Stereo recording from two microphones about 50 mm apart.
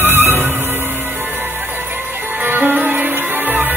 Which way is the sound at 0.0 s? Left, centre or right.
Right.